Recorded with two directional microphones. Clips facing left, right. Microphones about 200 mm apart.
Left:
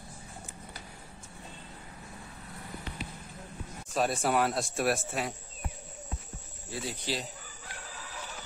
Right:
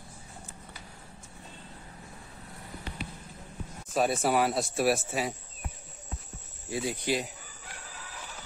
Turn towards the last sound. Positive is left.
turn(degrees=-15)  # may be behind; listen again after turning